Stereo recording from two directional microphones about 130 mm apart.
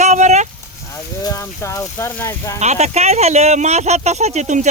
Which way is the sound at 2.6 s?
60° right (ahead or behind).